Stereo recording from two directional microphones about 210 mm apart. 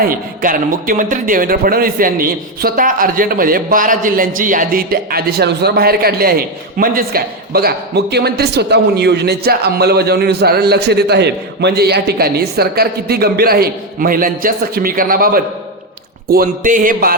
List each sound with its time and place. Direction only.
0.0 s a man's voice: 40° right (ahead or behind)
16.3 s music: 40° right (ahead or behind)